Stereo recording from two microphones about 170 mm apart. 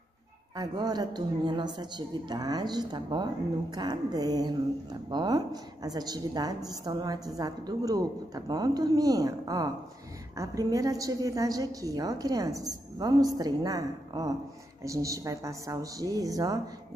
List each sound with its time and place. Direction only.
0.6 s a woman's voice: 25° right (ahead or behind)